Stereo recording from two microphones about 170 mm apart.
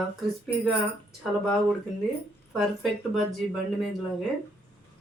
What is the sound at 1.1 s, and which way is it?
Speech, centre (ahead or behind).